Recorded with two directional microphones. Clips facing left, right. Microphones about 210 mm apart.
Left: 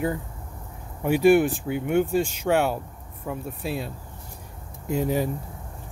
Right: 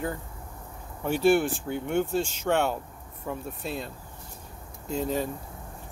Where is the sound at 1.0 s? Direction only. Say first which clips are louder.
Left 4 dB; 10° left (ahead or behind).